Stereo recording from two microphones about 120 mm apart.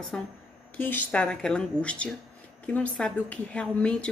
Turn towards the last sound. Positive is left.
turn(degrees=10)  # may be behind; listen again after turning